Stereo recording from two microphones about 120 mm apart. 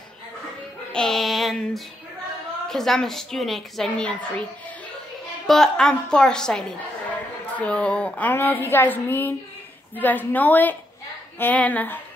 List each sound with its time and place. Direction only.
0.9 s female singing: 5° left (ahead or behind)
2.7 s a woman's voice: 5° left (ahead or behind)
5.5 s a woman's voice: 5° left (ahead or behind)